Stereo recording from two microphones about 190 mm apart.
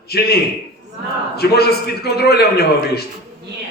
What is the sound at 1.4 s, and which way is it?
A man's voice, 55° left (ahead or behind).